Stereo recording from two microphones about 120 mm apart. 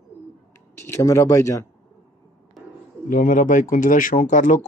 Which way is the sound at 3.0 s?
90° left.